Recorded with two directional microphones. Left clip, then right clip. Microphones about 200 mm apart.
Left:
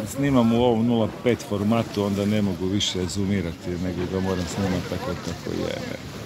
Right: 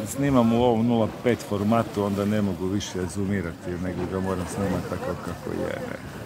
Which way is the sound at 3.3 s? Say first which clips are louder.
Left 2 dB; 20° left (ahead or behind).